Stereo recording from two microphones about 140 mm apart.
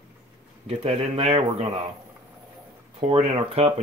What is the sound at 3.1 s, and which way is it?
Speech, 45° right (ahead or behind).